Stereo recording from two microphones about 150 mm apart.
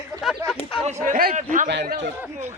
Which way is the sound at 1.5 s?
60° right (ahead or behind).